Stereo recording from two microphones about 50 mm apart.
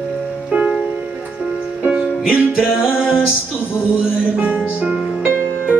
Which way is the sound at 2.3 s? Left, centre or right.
Left.